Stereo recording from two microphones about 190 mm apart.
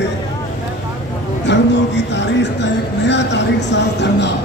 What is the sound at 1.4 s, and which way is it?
Music, 65° left (ahead or behind).